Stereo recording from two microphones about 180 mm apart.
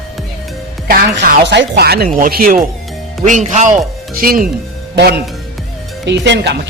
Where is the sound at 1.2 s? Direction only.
70° right (ahead or behind).